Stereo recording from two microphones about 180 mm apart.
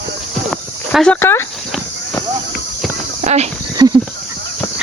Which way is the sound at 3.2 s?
40° right (ahead or behind).